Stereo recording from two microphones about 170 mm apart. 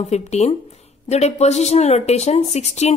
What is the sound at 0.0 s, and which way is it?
Speech, 40° left (ahead or behind).